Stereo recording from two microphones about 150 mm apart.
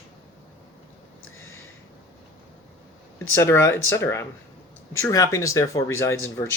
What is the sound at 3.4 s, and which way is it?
Speech, 15° left (ahead or behind).